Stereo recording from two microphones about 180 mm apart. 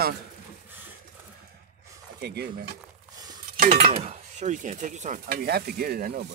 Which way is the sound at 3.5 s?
40° right (ahead or behind).